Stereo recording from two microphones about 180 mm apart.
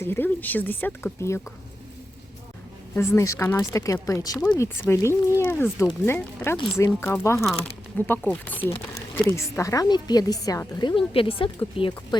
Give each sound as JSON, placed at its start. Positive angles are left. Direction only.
{"t": 0.0, "sound": "speech", "side_deg": 10}
{"t": 2.9, "sound": "a woman's voice", "side_deg": 15}